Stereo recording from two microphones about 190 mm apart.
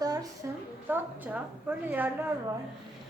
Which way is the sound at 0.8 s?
10° right (ahead or behind).